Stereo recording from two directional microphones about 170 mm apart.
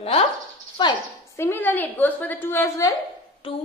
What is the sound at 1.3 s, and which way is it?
A woman's voice, 15° left (ahead or behind).